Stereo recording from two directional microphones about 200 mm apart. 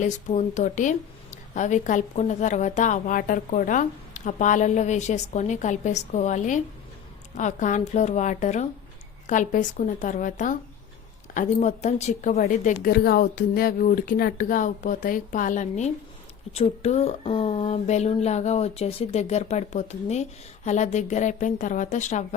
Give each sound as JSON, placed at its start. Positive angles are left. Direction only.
{"t": 0.0, "sound": "a woman's voice", "side_deg": 35}